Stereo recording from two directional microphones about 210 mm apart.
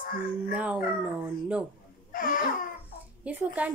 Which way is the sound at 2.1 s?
40° left (ahead or behind).